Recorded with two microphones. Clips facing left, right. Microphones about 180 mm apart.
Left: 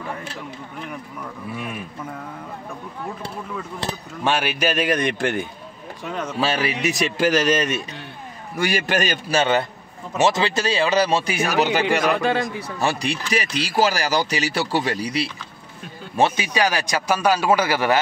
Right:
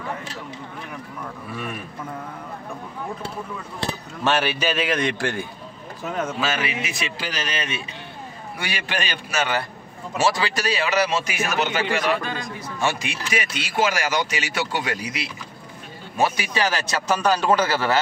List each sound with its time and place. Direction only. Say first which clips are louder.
4.2 s a man's voice: even; 10° left (ahead or behind)
6.0 s speech: right 2 dB; 5° right (ahead or behind)
6.4 s speech: left 4 dB; 35° left (ahead or behind)
9.3 s a man's voice: left 5 dB; 25° left (ahead or behind)
16.2 s a man's voice: left 3 dB; 20° left (ahead or behind)